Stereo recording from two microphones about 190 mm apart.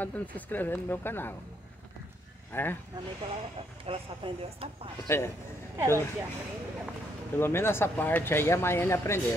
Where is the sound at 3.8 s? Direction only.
30° right (ahead or behind).